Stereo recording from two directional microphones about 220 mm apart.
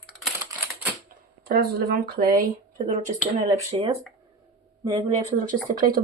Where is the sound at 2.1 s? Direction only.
40° right (ahead or behind).